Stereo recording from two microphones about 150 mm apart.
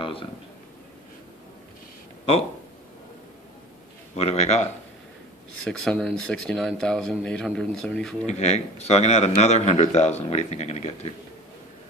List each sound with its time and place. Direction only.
0.0 s a sound: 35° left (ahead or behind)
4.1 s speech: 45° left (ahead or behind)
5.6 s speech: 5° left (ahead or behind)
8.3 s speech: 50° left (ahead or behind)